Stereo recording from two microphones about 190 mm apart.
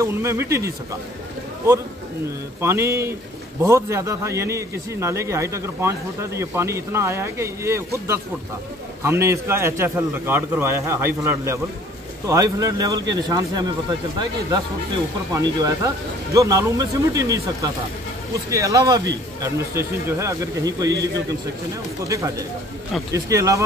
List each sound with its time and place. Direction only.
0.0 s a man's voice: 15° right (ahead or behind)
2.6 s a man's voice: 15° right (ahead or behind)
15.3 s a man's voice: 15° right (ahead or behind)